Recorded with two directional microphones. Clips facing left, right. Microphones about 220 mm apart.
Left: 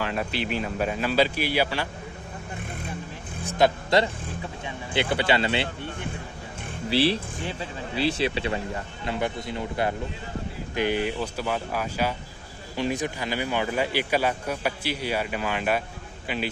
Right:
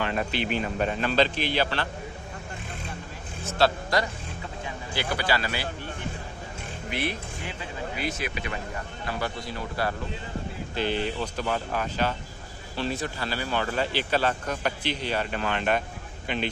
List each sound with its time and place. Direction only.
0.0 s speech: centre (ahead or behind)
3.4 s speech: 15° left (ahead or behind)
6.9 s a man's voice: 30° left (ahead or behind); by 16.4 s 5° left (ahead or behind)